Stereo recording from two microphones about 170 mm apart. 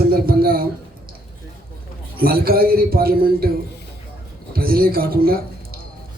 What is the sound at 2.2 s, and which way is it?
A man's voice, 60° right (ahead or behind).